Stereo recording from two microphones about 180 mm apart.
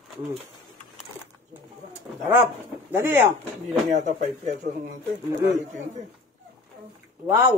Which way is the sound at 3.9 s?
40° right (ahead or behind).